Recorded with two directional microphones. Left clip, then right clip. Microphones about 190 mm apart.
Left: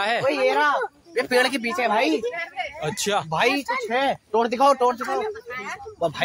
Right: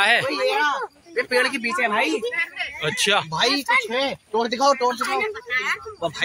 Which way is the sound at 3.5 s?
25° left (ahead or behind).